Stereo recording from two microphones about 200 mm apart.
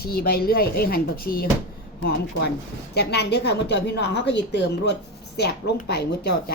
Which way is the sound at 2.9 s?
55° left (ahead or behind).